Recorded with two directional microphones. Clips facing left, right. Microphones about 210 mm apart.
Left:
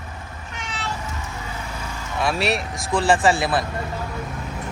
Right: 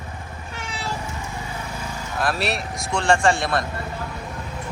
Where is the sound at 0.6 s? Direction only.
10° right (ahead or behind).